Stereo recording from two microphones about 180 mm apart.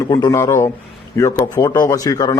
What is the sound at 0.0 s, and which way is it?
A man's voice, 20° left (ahead or behind).